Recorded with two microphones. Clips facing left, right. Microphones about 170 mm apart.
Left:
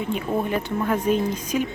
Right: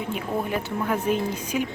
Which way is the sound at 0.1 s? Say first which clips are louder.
Left 3 dB; 10° right (ahead or behind).